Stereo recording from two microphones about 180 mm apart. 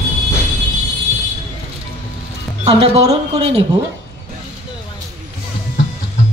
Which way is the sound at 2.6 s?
35° right (ahead or behind).